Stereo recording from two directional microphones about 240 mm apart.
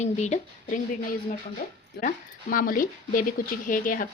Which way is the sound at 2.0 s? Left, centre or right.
Left.